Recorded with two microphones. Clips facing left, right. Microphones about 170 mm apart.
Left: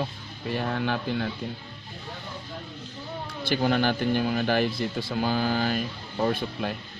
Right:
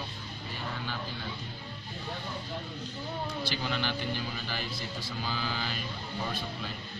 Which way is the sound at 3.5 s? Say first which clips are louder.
Left 14 dB; 55° left (ahead or behind).